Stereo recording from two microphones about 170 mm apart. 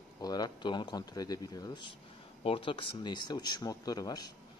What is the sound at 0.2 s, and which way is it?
Speech, 25° left (ahead or behind).